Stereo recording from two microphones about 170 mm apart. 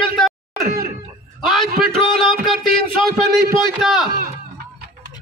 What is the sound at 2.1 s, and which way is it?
Music, centre (ahead or behind).